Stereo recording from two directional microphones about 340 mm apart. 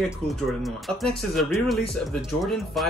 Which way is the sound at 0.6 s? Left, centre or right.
Centre.